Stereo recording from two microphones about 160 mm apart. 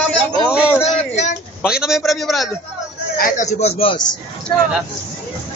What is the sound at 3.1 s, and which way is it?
A man's voice, 55° left (ahead or behind).